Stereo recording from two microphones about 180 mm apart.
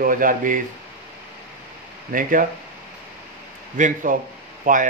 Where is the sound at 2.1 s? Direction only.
55° right (ahead or behind).